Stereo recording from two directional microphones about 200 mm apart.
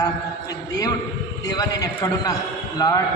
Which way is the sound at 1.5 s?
20° left (ahead or behind).